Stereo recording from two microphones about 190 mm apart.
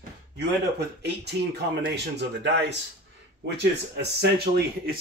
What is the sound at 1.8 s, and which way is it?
Speech, 65° right (ahead or behind).